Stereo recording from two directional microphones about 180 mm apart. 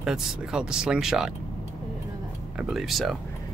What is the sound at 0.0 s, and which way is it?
Speech, 5° right (ahead or behind).